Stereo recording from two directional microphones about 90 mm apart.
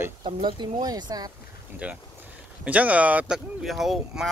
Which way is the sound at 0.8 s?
45° right (ahead or behind).